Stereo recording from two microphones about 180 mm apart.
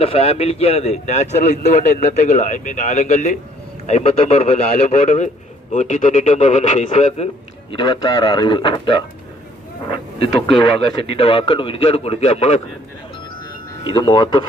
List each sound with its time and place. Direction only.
0.0 s a man's voice: 30° left (ahead or behind)
7.7 s speech: 25° left (ahead or behind)
11.0 s a man's voice: 30° left (ahead or behind)
13.8 s speech: 25° left (ahead or behind)